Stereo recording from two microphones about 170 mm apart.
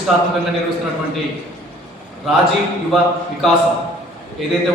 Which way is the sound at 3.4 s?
Centre (ahead or behind).